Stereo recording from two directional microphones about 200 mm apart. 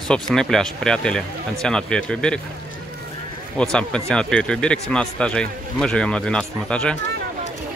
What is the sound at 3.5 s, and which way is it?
Speech, 5° left (ahead or behind).